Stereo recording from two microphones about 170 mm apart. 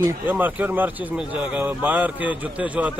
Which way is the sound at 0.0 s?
10° right (ahead or behind).